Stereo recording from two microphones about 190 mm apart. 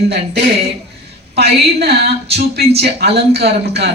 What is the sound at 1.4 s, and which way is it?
Speech, 55° right (ahead or behind).